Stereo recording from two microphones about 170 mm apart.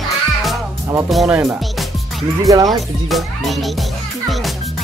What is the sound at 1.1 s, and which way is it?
Speech, centre (ahead or behind).